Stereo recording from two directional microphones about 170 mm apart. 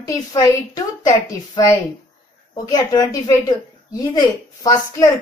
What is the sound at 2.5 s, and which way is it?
A woman's voice, 25° left (ahead or behind).